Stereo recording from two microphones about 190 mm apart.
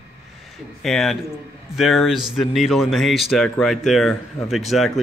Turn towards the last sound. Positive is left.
turn(degrees=0)  # may be behind; listen again after turning